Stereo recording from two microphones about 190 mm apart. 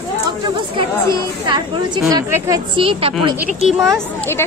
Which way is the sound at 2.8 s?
30° right (ahead or behind).